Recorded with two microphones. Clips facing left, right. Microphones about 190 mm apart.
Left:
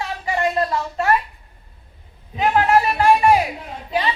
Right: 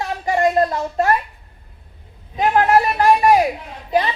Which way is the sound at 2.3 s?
40° right (ahead or behind).